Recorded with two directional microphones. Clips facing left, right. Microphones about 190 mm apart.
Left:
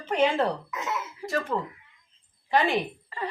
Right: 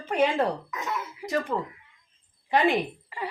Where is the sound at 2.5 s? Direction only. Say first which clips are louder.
Right 1 dB; 15° right (ahead or behind).